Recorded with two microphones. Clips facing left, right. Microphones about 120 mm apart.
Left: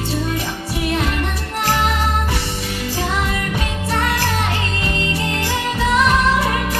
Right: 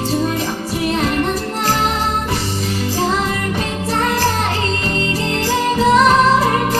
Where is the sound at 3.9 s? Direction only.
35° right (ahead or behind).